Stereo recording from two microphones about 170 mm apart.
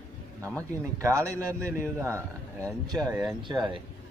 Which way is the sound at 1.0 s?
15° right (ahead or behind).